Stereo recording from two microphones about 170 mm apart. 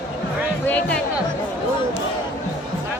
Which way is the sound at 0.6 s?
10° left (ahead or behind).